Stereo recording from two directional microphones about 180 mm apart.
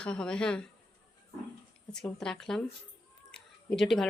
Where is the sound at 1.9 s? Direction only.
5° left (ahead or behind).